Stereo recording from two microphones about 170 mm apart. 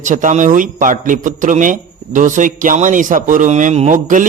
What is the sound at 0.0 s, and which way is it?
Speech, 50° right (ahead or behind).